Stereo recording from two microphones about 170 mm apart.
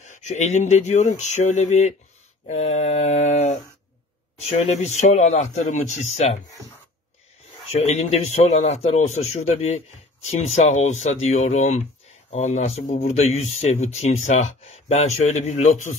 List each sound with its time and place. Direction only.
0.0 s speech: 45° left (ahead or behind)
7.8 s speech: 40° left (ahead or behind)